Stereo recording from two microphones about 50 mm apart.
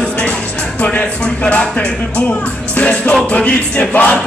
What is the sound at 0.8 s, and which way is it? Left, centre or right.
Speech, left.